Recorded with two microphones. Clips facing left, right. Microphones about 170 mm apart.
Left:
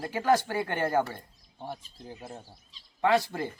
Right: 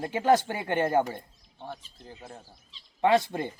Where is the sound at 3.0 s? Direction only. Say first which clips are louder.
Right 2 dB; 20° right (ahead or behind).